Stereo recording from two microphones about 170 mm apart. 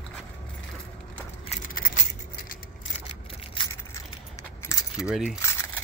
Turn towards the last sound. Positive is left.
turn(degrees=0)  # may be behind; listen again after turning